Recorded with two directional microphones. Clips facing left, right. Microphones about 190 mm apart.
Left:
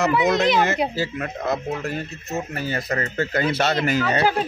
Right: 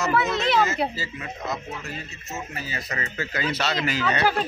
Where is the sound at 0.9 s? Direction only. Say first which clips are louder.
Left 8 dB; 65° left (ahead or behind).